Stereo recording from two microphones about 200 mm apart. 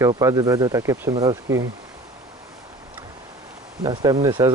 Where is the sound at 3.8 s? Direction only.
20° right (ahead or behind).